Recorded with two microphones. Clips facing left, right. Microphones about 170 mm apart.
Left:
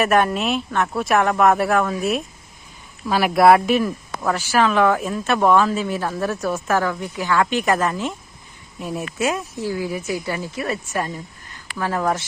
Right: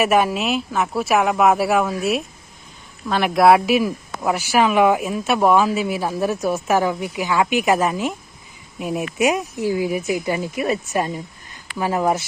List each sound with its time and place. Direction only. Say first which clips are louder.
0.0 s speech: even; 5° right (ahead or behind)